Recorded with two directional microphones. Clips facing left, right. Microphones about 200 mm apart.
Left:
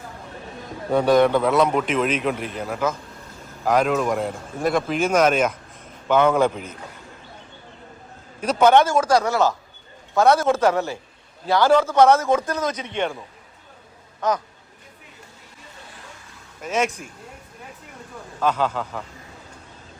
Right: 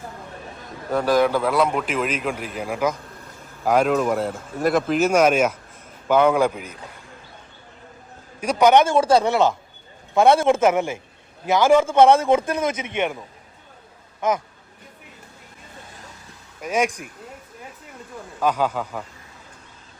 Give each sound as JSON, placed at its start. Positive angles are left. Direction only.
{"t": 0.9, "sound": "a man's voice", "side_deg": 0}
{"t": 8.4, "sound": "a man's voice", "side_deg": -15}
{"t": 14.2, "sound": "speech", "side_deg": -20}
{"t": 16.6, "sound": "a man's voice", "side_deg": -10}
{"t": 18.3, "sound": "a man's voice", "side_deg": -10}